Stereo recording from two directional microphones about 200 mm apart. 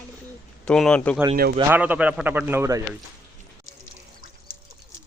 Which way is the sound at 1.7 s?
10° right (ahead or behind).